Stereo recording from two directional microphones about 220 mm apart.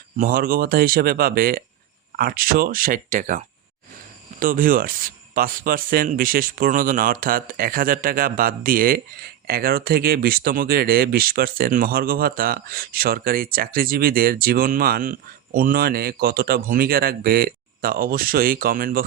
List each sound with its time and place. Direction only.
0.2 s speech: 40° right (ahead or behind)